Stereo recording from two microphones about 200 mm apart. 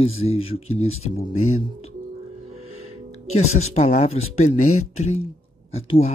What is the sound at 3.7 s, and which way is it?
Speech, 35° left (ahead or behind).